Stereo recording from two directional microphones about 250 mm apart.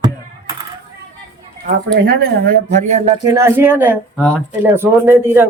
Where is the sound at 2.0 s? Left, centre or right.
Right.